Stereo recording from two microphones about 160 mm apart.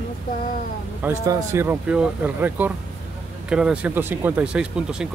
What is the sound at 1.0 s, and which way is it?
Speech, 15° right (ahead or behind).